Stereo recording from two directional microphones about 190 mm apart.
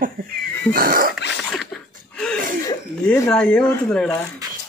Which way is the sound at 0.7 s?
50° right (ahead or behind).